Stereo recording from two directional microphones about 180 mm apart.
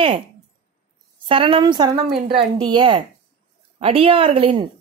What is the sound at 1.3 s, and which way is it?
Speech, 30° right (ahead or behind).